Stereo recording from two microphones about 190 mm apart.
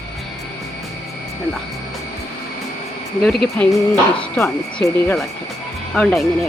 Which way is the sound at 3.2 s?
Centre (ahead or behind).